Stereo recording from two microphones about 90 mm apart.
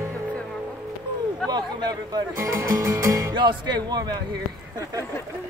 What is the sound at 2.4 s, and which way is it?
Music, 35° right (ahead or behind).